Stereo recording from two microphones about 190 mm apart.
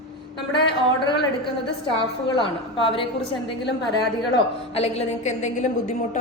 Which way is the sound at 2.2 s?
25° left (ahead or behind).